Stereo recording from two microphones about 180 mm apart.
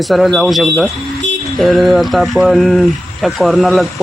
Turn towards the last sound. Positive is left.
turn(degrees=0)  # may be behind; listen again after turning